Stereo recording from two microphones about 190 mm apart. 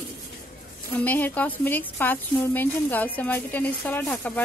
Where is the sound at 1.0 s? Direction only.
10° left (ahead or behind).